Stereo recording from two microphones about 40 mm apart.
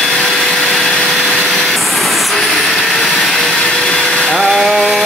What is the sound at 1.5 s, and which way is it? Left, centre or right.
Vehicle, centre.